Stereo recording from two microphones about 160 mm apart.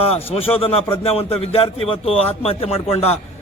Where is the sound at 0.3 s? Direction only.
35° left (ahead or behind).